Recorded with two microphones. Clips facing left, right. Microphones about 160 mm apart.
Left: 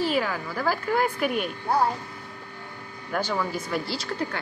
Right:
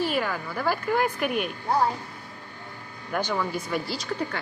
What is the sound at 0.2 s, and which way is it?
Speech, 5° left (ahead or behind).